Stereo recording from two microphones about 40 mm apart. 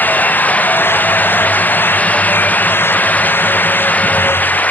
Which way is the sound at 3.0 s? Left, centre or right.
Left.